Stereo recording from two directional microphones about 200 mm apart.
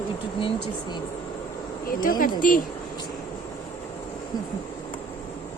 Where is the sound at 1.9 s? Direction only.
45° left (ahead or behind).